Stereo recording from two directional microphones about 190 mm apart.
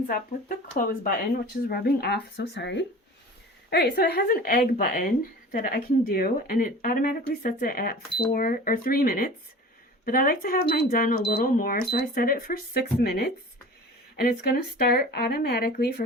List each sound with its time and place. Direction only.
0.1 s speech: 50° left (ahead or behind)